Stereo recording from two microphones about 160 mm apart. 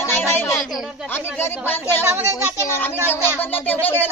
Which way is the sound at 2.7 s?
10° left (ahead or behind).